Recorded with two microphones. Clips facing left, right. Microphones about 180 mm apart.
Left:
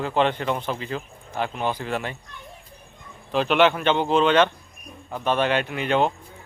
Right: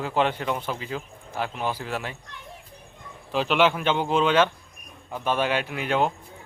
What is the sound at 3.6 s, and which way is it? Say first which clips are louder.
A man's voice: left 3 dB; 5° right (ahead or behind).